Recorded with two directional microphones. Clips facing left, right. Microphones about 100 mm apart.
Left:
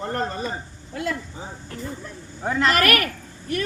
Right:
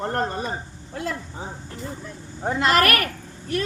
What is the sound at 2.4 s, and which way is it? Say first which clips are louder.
Speech: right 1 dB; 25° right (ahead or behind).